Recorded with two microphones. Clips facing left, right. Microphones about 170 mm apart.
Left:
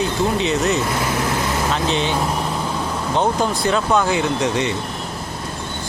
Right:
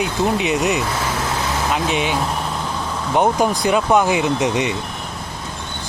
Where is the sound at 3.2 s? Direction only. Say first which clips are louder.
Right 3 dB; 15° right (ahead or behind).